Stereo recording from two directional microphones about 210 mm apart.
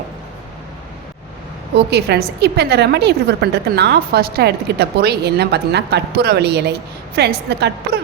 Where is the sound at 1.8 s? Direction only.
50° right (ahead or behind).